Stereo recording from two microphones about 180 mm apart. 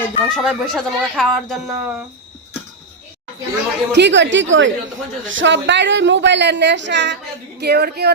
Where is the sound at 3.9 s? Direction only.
75° right (ahead or behind).